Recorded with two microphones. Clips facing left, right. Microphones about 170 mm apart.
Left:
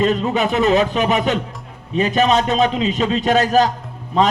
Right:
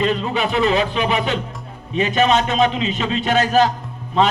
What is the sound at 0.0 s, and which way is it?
A man's voice, 40° left (ahead or behind).